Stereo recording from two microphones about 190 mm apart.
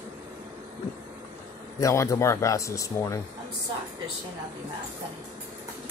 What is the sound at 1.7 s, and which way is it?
Speech, 15° left (ahead or behind).